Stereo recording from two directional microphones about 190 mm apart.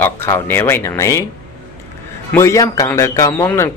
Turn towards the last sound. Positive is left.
turn(degrees=15)  # may be behind; listen again after turning